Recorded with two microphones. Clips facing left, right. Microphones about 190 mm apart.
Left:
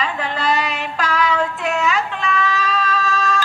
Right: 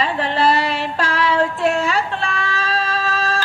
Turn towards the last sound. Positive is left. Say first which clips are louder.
# left 1 dB
turn(degrees=-30)  # may be behind; listen again after turning